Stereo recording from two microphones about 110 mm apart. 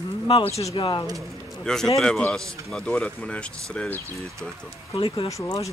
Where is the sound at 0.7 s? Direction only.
50° left (ahead or behind).